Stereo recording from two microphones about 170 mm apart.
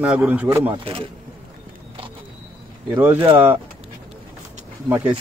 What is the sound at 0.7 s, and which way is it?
Speech, 35° right (ahead or behind).